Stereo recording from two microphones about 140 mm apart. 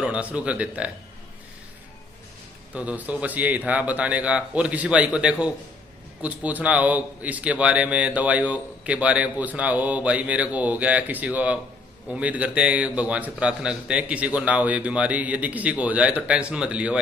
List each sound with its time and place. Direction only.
0.0 s a man's voice: 10° right (ahead or behind)
2.7 s a man's voice: 10° right (ahead or behind)